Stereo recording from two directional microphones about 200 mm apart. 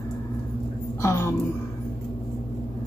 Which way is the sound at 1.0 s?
15° left (ahead or behind).